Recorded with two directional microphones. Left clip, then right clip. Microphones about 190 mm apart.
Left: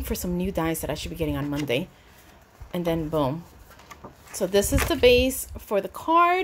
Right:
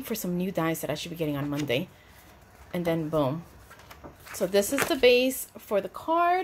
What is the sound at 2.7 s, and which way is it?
A woman's voice, 15° left (ahead or behind).